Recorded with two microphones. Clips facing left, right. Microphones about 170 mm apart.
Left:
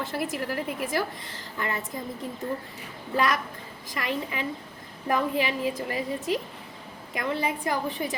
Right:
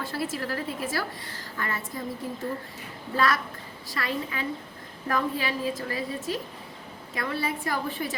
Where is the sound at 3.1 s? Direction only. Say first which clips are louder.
Even; 15° left (ahead or behind).